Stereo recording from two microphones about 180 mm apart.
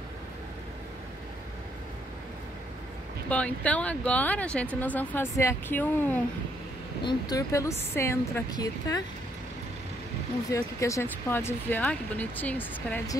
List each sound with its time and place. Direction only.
3.3 s speech: 5° left (ahead or behind)
7.1 s speech: 20° left (ahead or behind)
10.5 s speech: 15° left (ahead or behind)